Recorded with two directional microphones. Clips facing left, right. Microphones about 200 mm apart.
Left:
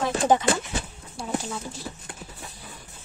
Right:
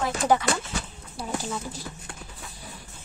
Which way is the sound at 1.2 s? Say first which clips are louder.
Even; centre (ahead or behind).